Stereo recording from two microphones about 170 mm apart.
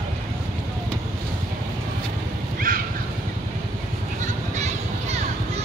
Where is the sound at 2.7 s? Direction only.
55° right (ahead or behind).